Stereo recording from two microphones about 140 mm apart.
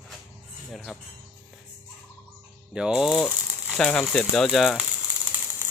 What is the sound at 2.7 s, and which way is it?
Speech, 5° right (ahead or behind).